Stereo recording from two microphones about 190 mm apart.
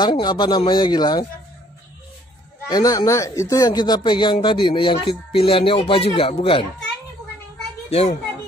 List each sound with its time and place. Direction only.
0.0 s speech: 25° left (ahead or behind)
2.7 s speech: 20° left (ahead or behind)
7.9 s a child's voice: 35° left (ahead or behind)